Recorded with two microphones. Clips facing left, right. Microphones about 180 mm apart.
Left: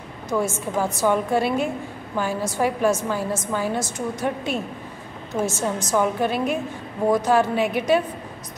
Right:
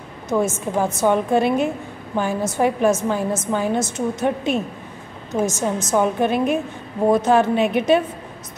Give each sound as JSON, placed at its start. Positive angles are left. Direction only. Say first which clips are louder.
{"t": 0.3, "sound": "a woman's voice", "louder": "right 3 dB", "side_deg": -20}
{"t": 5.6, "sound": "a woman's voice", "louder": "right 2 dB", "side_deg": -20}